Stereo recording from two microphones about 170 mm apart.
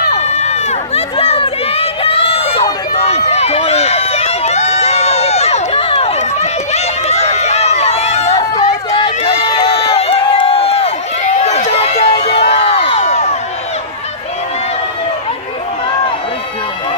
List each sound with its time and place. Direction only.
0.2 s run: 40° left (ahead or behind)
12.4 s crowd: 40° left (ahead or behind)